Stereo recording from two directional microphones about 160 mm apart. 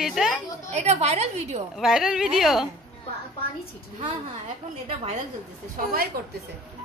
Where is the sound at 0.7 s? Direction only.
40° right (ahead or behind).